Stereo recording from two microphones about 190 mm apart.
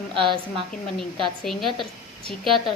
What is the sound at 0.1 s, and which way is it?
Speech, 25° right (ahead or behind).